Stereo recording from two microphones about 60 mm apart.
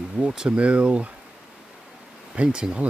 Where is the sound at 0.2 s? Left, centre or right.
Centre.